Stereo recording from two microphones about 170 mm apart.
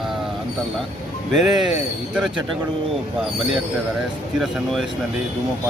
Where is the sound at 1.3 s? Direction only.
Centre (ahead or behind).